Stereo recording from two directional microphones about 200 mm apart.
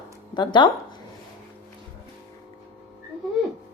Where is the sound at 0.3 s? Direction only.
20° left (ahead or behind).